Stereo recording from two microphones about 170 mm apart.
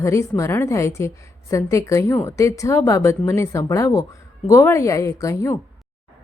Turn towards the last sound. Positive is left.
turn(degrees=15)  # may be behind; listen again after turning